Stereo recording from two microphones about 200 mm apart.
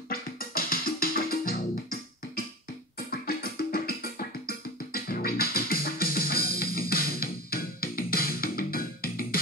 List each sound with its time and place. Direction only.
0.1 s music: 45° left (ahead or behind)